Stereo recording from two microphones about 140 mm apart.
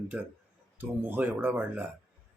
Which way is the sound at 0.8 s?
15° right (ahead or behind).